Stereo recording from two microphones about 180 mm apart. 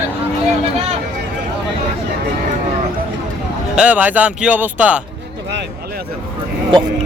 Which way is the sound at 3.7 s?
5° right (ahead or behind).